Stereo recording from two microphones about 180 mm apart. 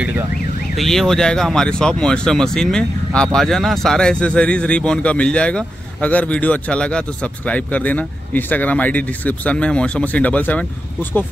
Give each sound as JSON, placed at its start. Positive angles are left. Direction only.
{"t": 0.7, "sound": "speech", "side_deg": 0}